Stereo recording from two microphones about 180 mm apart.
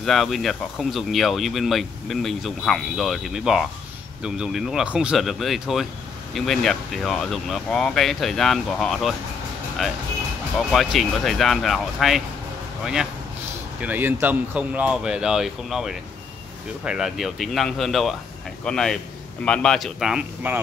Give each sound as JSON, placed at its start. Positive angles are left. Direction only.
{"t": 0.0, "sound": "speech", "side_deg": 0}
{"t": 10.7, "sound": "speech", "side_deg": 0}